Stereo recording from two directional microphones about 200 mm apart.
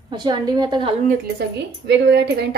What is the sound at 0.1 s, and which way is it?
Speech, 20° right (ahead or behind).